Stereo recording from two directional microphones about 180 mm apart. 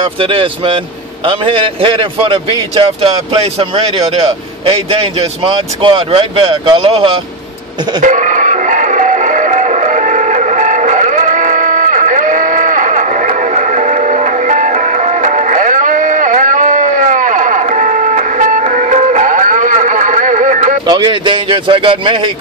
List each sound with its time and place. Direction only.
0.2 s a man's voice: 30° right (ahead or behind)
8.0 s music: 45° right (ahead or behind)
20.8 s a man's voice: 25° right (ahead or behind)